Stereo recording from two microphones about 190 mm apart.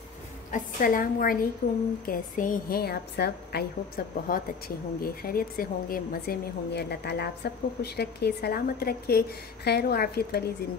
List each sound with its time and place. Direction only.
0.5 s a woman's voice: 45° left (ahead or behind)